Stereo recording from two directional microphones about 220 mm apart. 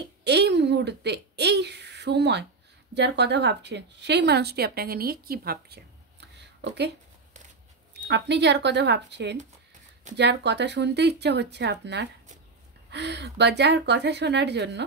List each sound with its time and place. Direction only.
0.2 s speech: 50° right (ahead or behind)
7.9 s speech: 50° right (ahead or behind)